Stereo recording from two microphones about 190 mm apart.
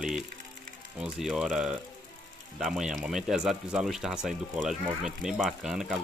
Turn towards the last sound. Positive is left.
turn(degrees=-5)  # may be behind; listen again after turning